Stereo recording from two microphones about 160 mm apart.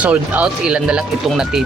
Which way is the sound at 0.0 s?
10° right (ahead or behind).